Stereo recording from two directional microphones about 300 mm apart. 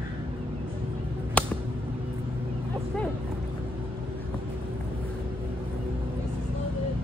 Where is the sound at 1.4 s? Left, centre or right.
Centre.